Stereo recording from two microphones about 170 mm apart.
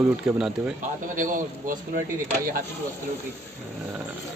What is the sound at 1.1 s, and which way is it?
Speech, 50° right (ahead or behind).